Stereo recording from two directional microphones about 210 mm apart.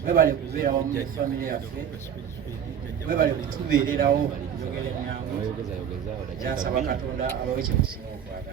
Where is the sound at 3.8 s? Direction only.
40° right (ahead or behind).